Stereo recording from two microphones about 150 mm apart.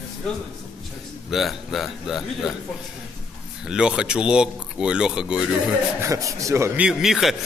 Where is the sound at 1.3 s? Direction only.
Centre (ahead or behind).